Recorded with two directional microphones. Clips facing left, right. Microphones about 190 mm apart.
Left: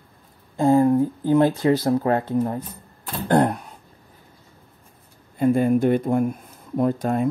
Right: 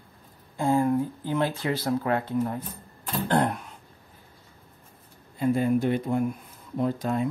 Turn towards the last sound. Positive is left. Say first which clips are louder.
# left 5 dB
turn(degrees=50)  # may be behind; listen again after turning